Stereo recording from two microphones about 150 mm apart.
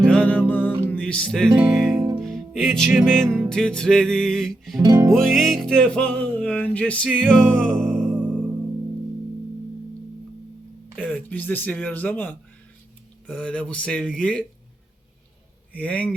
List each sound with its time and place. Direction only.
0.0 s music: 5° left (ahead or behind)
4.8 s music: 20° right (ahead or behind)
5.1 s music: centre (ahead or behind)
8.1 s music: 10° right (ahead or behind)
11.3 s speech: 10° left (ahead or behind)
15.7 s speech: 10° left (ahead or behind)